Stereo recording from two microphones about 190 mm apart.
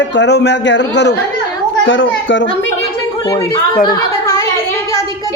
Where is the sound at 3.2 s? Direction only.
20° left (ahead or behind).